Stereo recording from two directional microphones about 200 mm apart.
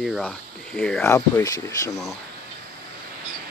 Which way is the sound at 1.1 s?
15° left (ahead or behind).